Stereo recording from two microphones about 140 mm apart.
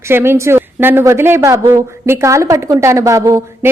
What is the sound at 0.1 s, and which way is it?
A woman's voice, 15° right (ahead or behind).